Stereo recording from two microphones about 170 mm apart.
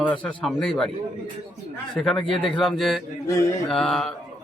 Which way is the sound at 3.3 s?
20° left (ahead or behind).